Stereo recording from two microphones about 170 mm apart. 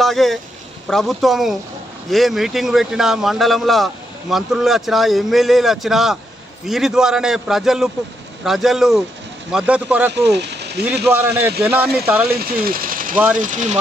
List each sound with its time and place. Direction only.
0.0 s a sound: centre (ahead or behind)
0.8 s a man's voice: centre (ahead or behind)
10.3 s speech: 85° right
11.1 s a man's voice: 10° right (ahead or behind)
12.4 s speech: 60° right (ahead or behind)